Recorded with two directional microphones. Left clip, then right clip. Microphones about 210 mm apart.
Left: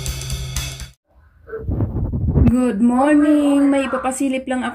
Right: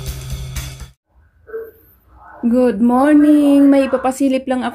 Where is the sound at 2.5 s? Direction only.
30° right (ahead or behind).